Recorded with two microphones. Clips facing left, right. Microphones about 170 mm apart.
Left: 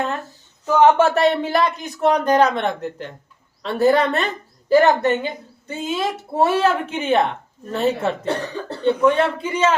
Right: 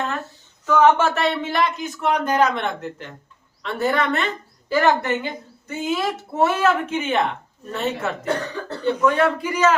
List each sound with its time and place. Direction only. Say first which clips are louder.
0.6 s a woman's voice: left 2 dB; 35° left (ahead or behind)